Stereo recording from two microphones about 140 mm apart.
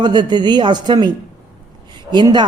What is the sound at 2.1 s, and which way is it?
Speech, 30° right (ahead or behind).